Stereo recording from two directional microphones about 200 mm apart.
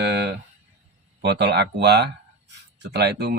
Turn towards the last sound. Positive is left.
turn(degrees=-55)  # may be behind; listen again after turning